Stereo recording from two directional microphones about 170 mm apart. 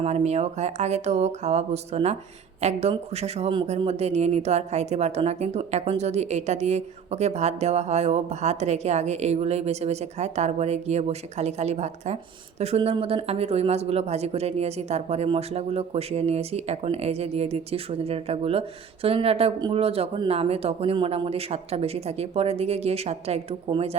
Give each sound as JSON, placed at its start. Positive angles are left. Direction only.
{"t": 0.0, "sound": "speech", "side_deg": -40}